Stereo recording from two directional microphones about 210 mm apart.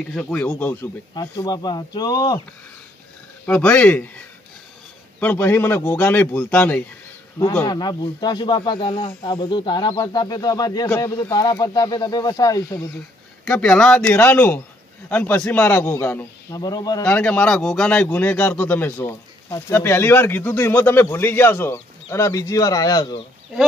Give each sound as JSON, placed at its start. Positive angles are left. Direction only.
{"t": 0.1, "sound": "a man's voice", "side_deg": 5}
{"t": 1.1, "sound": "speech", "side_deg": 20}
{"t": 3.4, "sound": "a man's voice", "side_deg": 5}
{"t": 5.2, "sound": "a man's voice", "side_deg": 10}
{"t": 13.5, "sound": "a man's voice", "side_deg": 5}
{"t": 17.0, "sound": "a man's voice", "side_deg": 5}